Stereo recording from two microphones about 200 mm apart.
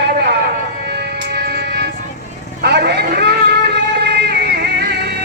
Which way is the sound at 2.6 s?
55° right (ahead or behind).